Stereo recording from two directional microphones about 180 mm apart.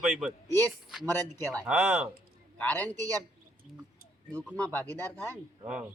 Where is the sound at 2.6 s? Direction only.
10° left (ahead or behind).